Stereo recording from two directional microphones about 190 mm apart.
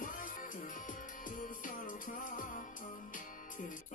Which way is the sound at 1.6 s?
45° left (ahead or behind).